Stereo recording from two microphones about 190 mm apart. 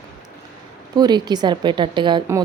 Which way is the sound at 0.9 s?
20° right (ahead or behind).